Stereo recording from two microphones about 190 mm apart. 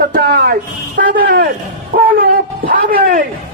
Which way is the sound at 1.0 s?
45° right (ahead or behind).